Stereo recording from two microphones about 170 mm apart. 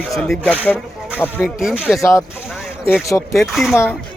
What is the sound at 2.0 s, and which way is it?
Speech, 20° left (ahead or behind).